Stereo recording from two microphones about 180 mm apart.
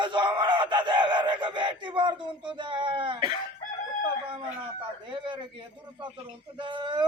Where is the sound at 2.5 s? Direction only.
25° right (ahead or behind).